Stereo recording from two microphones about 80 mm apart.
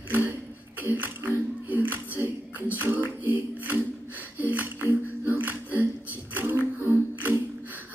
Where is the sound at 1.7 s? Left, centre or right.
Right.